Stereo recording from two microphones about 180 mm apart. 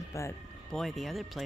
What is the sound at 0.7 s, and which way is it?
Speech, centre (ahead or behind).